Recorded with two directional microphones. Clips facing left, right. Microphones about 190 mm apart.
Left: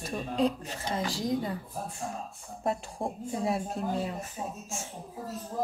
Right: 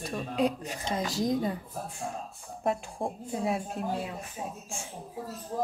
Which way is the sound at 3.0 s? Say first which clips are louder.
Even; centre (ahead or behind).